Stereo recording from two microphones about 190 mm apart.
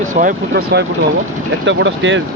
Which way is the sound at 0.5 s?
60° right (ahead or behind).